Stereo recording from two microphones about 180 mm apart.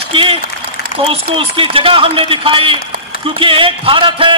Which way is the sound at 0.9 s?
30° right (ahead or behind).